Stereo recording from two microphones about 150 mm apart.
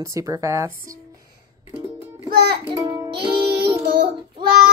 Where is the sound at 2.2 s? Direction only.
90° right.